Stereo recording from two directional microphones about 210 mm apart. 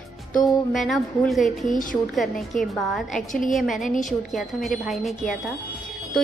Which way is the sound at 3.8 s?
40° left (ahead or behind).